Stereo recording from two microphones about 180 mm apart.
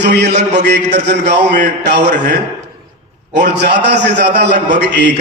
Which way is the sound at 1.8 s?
70° right (ahead or behind).